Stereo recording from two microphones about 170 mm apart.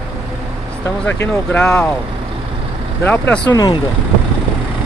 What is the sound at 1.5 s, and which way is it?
Speech, 5° left (ahead or behind).